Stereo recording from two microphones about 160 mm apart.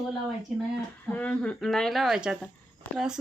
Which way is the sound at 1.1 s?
10° left (ahead or behind).